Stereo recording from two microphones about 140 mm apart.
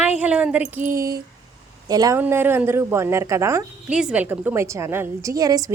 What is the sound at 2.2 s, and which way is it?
A woman's voice, 15° right (ahead or behind).